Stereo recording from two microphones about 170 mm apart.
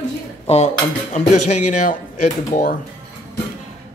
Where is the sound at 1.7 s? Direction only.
50° left (ahead or behind).